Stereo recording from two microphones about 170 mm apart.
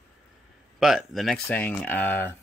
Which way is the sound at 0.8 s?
Centre (ahead or behind).